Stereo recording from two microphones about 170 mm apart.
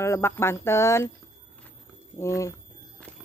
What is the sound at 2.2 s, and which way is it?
Speech, 15° left (ahead or behind).